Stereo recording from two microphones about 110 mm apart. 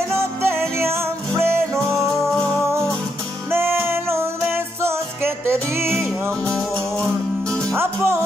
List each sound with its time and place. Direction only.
0.1 s music: 25° right (ahead or behind)
3.5 s music: 20° right (ahead or behind)
6.4 s music: 5° left (ahead or behind)
7.7 s music: 20° right (ahead or behind)